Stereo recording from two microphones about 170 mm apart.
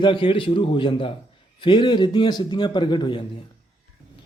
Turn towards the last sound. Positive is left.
turn(degrees=25)  # may be behind; listen again after turning